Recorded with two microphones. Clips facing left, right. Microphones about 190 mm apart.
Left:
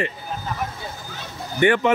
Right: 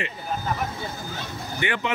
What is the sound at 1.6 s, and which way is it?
Speech, 45° left (ahead or behind).